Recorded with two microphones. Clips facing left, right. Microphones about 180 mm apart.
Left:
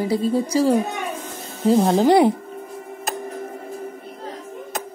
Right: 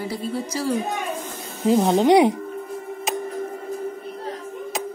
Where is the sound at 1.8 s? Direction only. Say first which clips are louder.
Even; centre (ahead or behind).